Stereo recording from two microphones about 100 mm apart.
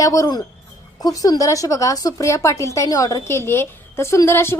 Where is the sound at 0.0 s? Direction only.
35° left (ahead or behind).